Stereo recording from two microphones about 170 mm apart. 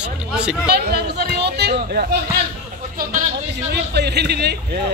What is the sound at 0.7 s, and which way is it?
Speech, 70° right (ahead or behind).